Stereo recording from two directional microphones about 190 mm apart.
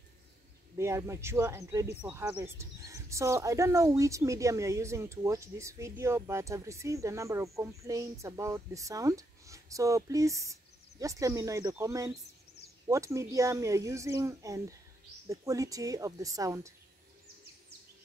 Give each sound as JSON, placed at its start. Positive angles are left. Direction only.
{"t": 0.7, "sound": "speech", "side_deg": -15}